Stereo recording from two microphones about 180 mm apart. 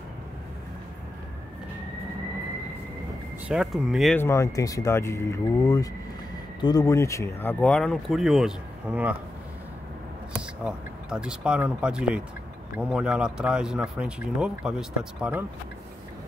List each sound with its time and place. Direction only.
3.4 s speech: 5° right (ahead or behind)
4.2 s speech: 15° left (ahead or behind); by 9.1 s 5° right (ahead or behind)
10.3 s speech: 5° right (ahead or behind)